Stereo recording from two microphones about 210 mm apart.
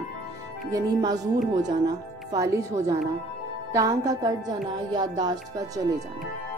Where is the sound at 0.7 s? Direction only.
20° right (ahead or behind).